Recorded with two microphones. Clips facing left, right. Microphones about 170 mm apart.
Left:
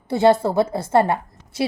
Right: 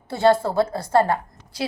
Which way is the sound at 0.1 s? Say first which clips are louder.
Left 2 dB; 20° left (ahead or behind).